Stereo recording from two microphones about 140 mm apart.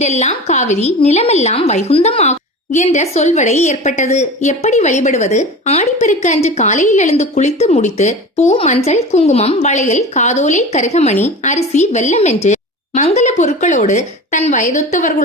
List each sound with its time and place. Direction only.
0.0 s a woman's voice: 55° left (ahead or behind)